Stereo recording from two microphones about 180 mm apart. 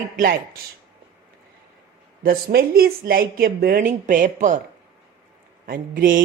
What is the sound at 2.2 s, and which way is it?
Speech, 55° right (ahead or behind).